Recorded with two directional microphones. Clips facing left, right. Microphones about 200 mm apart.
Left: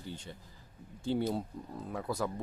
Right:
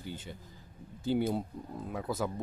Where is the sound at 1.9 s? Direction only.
5° right (ahead or behind).